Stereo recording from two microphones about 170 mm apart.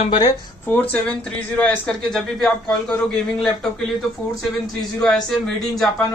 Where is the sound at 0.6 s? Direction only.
10° left (ahead or behind).